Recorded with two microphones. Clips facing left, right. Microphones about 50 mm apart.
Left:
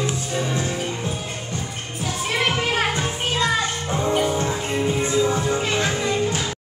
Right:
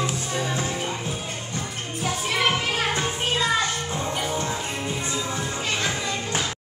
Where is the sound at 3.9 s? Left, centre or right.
Centre.